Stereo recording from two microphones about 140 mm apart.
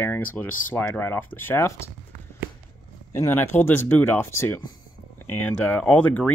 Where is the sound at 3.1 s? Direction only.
20° left (ahead or behind).